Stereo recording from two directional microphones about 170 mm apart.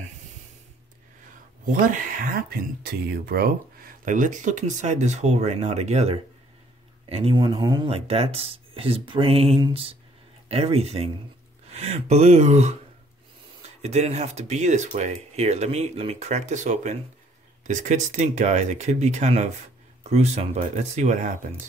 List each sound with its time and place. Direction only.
1.9 s speech: 50° right (ahead or behind)
13.8 s speech: 40° right (ahead or behind)